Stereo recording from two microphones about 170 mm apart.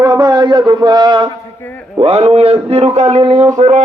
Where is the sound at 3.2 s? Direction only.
25° right (ahead or behind).